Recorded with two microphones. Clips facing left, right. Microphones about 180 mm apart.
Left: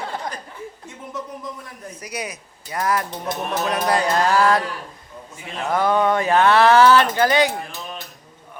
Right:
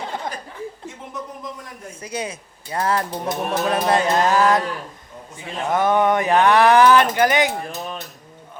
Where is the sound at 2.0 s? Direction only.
30° right (ahead or behind).